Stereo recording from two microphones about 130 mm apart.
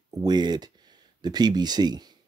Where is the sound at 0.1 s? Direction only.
30° right (ahead or behind).